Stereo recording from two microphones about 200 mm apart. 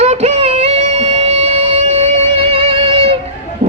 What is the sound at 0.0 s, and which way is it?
Music, 30° right (ahead or behind).